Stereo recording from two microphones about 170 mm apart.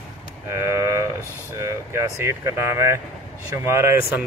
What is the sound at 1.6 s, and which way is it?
Speech, 15° right (ahead or behind).